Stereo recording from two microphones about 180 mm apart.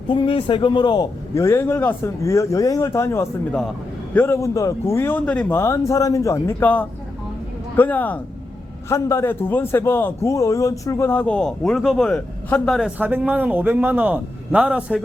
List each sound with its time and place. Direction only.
0.1 s a man's voice: 30° left (ahead or behind); by 15.0 s 5° right (ahead or behind)